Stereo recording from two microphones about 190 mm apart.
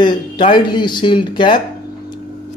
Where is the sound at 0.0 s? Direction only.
25° left (ahead or behind).